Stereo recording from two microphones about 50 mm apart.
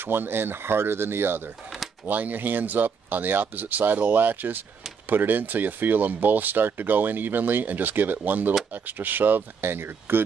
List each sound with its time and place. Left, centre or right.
0.0 s speech: right
2.0 s speech: right